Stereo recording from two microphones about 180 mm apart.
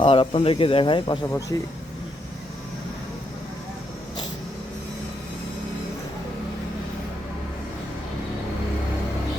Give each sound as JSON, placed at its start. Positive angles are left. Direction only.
{"t": 0.0, "sound": "speech", "side_deg": 30}